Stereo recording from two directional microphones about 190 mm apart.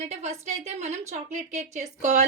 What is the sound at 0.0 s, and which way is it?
A woman's voice, 35° right (ahead or behind).